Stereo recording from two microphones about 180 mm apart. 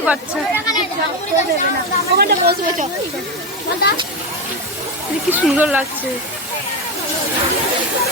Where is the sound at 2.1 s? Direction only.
60° right (ahead or behind).